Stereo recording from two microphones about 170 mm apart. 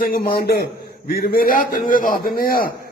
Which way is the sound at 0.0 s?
60° left (ahead or behind).